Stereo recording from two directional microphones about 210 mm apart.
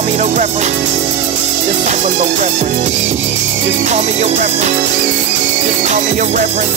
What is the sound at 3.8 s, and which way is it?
Music, 35° right (ahead or behind).